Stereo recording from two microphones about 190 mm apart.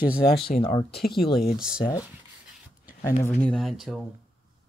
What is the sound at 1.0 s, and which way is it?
Speech, centre (ahead or behind).